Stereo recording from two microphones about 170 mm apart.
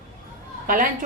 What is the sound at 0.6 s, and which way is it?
Speech, 55° right (ahead or behind).